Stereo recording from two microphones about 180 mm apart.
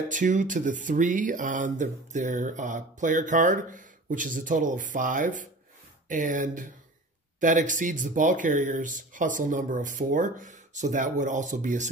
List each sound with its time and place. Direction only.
0.1 s speech: 45° right (ahead or behind)